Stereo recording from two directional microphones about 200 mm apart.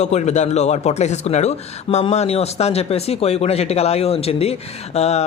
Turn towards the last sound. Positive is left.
turn(degrees=30)  # may be behind; listen again after turning